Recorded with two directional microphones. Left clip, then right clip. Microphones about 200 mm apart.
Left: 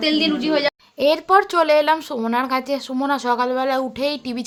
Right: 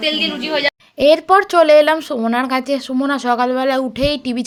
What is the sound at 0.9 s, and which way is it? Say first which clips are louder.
A woman's voice: right 5 dB; 15° right (ahead or behind).